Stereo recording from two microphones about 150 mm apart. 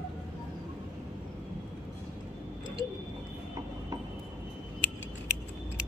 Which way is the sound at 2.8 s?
30° right (ahead or behind).